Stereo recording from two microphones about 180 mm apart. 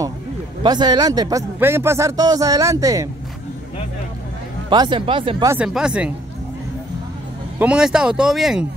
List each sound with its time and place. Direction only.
0.7 s a man's voice: 25° right (ahead or behind)
4.6 s a man's voice: 25° right (ahead or behind)
5.4 s speech: 15° right (ahead or behind)
7.5 s speech: 5° right (ahead or behind)